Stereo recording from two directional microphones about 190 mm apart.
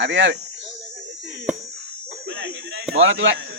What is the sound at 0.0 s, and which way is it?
Speech, 65° right (ahead or behind).